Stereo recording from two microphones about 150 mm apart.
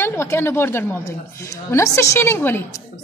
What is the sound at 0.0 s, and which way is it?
A woman's voice, 15° left (ahead or behind).